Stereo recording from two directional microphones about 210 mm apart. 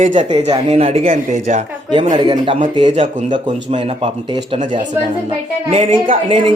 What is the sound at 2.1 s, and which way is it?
Speech, 20° right (ahead or behind).